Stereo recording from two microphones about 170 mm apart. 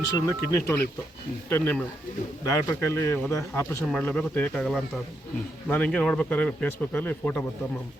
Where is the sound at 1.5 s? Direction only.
10° left (ahead or behind).